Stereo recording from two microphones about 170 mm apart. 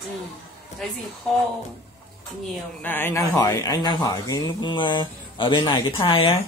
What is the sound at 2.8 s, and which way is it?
Speech, 10° left (ahead or behind).